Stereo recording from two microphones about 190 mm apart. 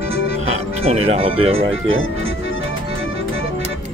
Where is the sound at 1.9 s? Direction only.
90° right.